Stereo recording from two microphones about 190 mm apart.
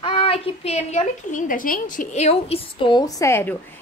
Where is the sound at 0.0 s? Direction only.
30° left (ahead or behind).